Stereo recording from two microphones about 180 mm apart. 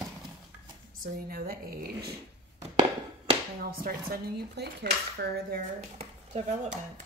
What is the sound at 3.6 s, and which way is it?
Speech, 55° right (ahead or behind).